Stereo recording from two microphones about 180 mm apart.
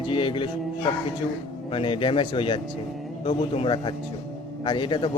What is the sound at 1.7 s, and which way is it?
A man's voice, 30° left (ahead or behind).